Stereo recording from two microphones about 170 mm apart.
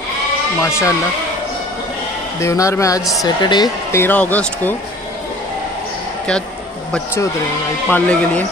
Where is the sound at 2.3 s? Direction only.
15° left (ahead or behind).